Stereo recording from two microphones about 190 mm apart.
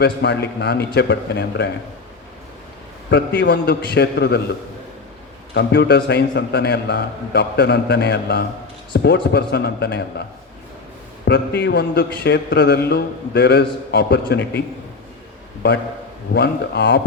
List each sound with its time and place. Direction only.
0.0 s a man's voice: 60° left (ahead or behind)
3.1 s a man's voice: 65° left (ahead or behind)
5.5 s a man's voice: 60° left (ahead or behind)
11.3 s a man's voice: 60° left (ahead or behind)
16.3 s a man's voice: 60° left (ahead or behind)